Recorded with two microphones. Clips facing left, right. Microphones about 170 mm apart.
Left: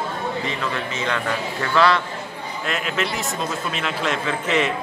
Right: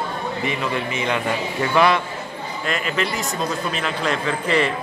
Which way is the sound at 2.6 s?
Centre (ahead or behind).